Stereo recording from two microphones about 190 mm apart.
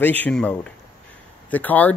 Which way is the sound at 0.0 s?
10° left (ahead or behind).